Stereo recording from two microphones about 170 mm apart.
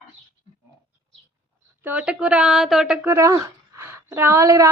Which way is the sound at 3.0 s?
15° right (ahead or behind).